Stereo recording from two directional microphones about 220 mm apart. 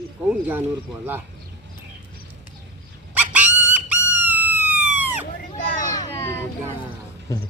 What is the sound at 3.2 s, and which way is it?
Fowl, 5° right (ahead or behind).